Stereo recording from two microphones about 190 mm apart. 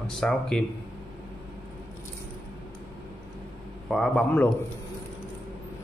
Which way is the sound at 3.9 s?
5° left (ahead or behind).